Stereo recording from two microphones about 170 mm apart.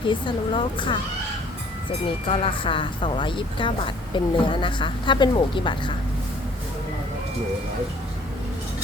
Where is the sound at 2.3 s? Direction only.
30° left (ahead or behind).